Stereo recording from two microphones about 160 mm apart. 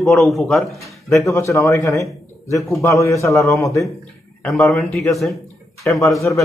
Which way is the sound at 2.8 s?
20° left (ahead or behind).